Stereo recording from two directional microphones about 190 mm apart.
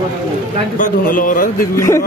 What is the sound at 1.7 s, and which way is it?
Speech, 15° left (ahead or behind).